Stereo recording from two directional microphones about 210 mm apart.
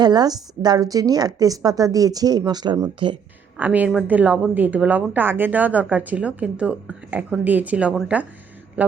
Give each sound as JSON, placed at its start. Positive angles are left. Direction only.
{"t": 0.0, "sound": "a woman's voice", "side_deg": -20}
{"t": 3.6, "sound": "a woman's voice", "side_deg": -5}